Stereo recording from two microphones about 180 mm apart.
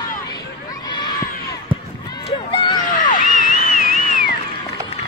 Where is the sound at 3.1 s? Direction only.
45° left (ahead or behind).